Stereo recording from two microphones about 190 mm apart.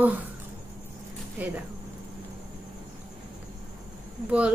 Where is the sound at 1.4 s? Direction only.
10° right (ahead or behind).